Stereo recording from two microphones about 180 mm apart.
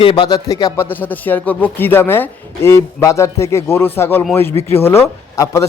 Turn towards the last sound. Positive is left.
turn(degrees=15)  # may be behind; listen again after turning